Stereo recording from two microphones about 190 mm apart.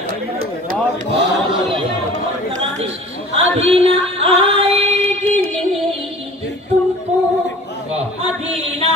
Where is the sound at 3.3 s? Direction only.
30° right (ahead or behind).